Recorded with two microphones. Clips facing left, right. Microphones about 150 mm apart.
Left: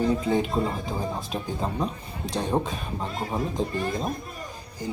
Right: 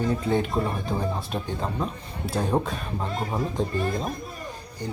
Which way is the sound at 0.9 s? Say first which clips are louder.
Right 1 dB; centre (ahead or behind).